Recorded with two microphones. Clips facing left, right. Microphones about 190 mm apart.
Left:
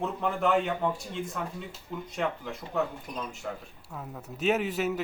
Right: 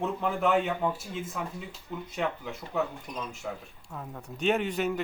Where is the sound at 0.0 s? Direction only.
Centre (ahead or behind).